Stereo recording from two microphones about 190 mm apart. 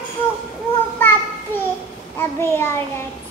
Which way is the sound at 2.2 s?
10° left (ahead or behind).